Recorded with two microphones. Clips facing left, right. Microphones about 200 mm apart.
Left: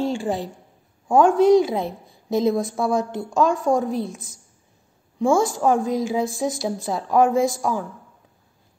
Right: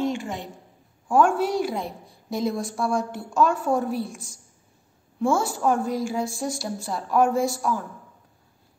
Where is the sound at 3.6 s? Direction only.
90° left.